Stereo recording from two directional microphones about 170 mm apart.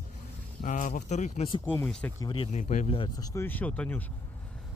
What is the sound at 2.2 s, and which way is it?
Speech, 35° left (ahead or behind).